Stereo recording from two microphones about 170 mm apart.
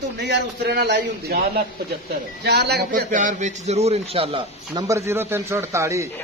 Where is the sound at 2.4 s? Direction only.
75° right (ahead or behind).